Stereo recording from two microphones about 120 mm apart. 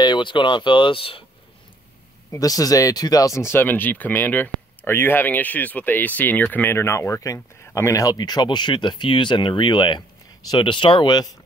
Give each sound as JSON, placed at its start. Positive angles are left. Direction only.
{"t": 0.0, "sound": "speech", "side_deg": 40}
{"t": 2.3, "sound": "speech", "side_deg": 30}